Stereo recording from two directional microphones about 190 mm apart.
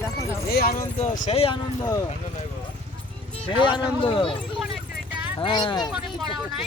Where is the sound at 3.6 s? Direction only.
25° left (ahead or behind).